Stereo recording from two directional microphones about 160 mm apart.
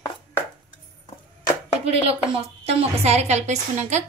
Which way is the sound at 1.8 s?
40° right (ahead or behind).